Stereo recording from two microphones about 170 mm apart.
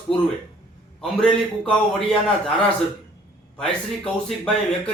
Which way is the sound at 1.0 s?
5° left (ahead or behind).